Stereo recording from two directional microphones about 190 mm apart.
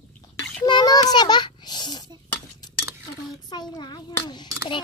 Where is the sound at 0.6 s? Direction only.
20° left (ahead or behind).